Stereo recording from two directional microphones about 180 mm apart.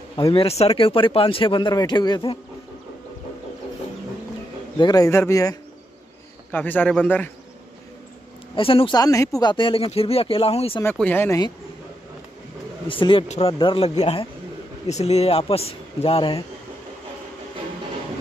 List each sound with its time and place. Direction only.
0.1 s speech: 25° left (ahead or behind)
4.7 s speech: 20° left (ahead or behind)
8.5 s speech: 30° left (ahead or behind)
10.8 s speech: 10° left (ahead or behind)
12.8 s a man's voice: 30° left (ahead or behind)